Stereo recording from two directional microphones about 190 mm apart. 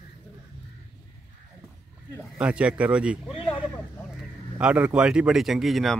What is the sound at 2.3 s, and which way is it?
Speech, 5° right (ahead or behind).